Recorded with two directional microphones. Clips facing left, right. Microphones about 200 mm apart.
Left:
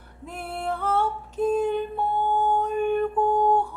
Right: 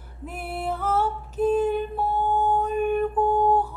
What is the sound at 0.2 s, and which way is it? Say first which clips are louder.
Female singing: right 1 dB; 5° right (ahead or behind).